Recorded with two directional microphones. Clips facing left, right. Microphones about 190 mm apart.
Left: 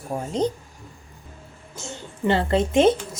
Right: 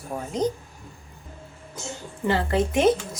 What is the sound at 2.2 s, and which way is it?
Speech, 25° left (ahead or behind).